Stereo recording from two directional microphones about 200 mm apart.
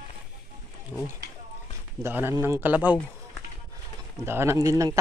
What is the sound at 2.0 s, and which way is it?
Speech, 10° right (ahead or behind).